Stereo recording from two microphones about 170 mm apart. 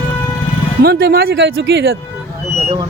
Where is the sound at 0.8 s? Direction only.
70° right (ahead or behind); by 1.8 s 90° right.